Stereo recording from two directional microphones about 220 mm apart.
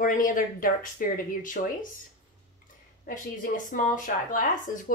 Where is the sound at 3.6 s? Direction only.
35° left (ahead or behind).